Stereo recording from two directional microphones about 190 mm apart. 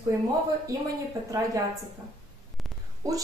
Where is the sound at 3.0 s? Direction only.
20° right (ahead or behind).